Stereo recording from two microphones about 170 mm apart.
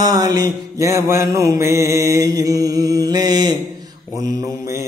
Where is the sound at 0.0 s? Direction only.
25° right (ahead or behind).